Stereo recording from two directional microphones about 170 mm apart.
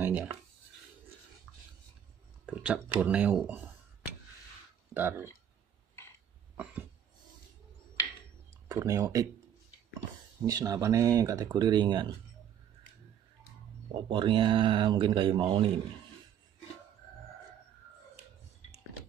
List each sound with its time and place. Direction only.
0.0 s speech: 10° right (ahead or behind)
2.4 s speech: 5° right (ahead or behind)
4.9 s speech: 15° right (ahead or behind)
6.5 s cough: 10° right (ahead or behind)
8.6 s speech: 20° right (ahead or behind)
10.4 s speech: 20° right (ahead or behind)
14.0 s speech: 30° right (ahead or behind)